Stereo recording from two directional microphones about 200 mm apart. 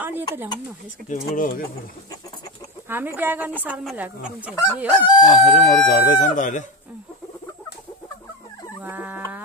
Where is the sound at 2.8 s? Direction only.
10° right (ahead or behind).